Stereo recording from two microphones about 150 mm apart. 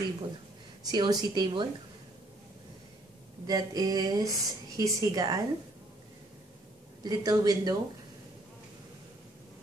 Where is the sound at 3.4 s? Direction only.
25° right (ahead or behind).